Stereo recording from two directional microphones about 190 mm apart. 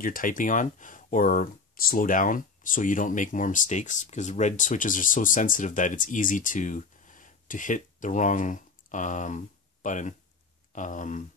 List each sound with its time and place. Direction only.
0.0 s speech: 45° left (ahead or behind)